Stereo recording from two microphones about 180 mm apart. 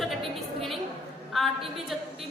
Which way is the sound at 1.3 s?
Centre (ahead or behind).